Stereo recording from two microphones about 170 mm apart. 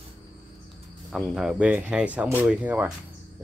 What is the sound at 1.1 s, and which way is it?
Speech, centre (ahead or behind).